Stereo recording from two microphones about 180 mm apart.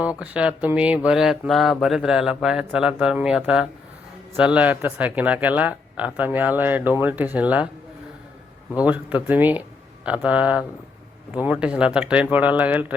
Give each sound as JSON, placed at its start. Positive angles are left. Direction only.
{"t": 0.2, "sound": "speech", "side_deg": -5}
{"t": 8.7, "sound": "speech", "side_deg": -10}